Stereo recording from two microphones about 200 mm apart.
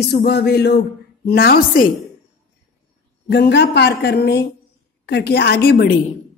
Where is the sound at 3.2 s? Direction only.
55° left (ahead or behind).